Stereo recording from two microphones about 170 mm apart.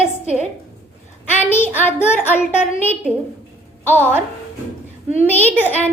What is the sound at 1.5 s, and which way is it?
Speech, 10° left (ahead or behind).